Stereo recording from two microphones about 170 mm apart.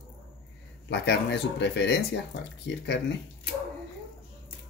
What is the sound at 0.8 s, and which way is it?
Speech, 90° left.